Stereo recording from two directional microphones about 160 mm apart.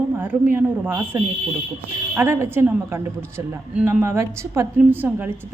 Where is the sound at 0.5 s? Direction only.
15° right (ahead or behind).